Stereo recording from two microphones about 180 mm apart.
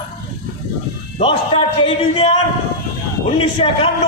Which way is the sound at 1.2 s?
30° left (ahead or behind).